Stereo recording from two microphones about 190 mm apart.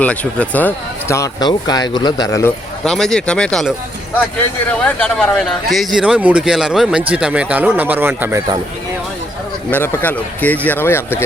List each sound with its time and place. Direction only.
0.0 s speech: 5° left (ahead or behind)
2.8 s a man's voice: centre (ahead or behind)
4.8 s a man's voice: 5° left (ahead or behind); by 8.4 s 10° right (ahead or behind)
9.7 s speech: 10° left (ahead or behind)